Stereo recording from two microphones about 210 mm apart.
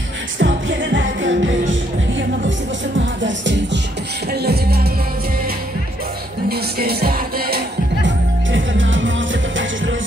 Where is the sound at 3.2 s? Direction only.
60° right (ahead or behind).